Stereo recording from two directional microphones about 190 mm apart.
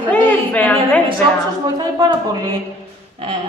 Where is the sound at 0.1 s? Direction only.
10° left (ahead or behind).